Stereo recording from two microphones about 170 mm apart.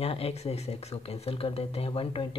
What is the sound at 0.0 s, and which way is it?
Speech, 35° left (ahead or behind).